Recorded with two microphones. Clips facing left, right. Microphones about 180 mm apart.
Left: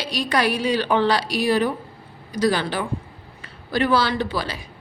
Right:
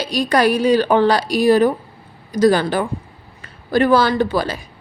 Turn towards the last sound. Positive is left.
turn(degrees=-45)  # may be behind; listen again after turning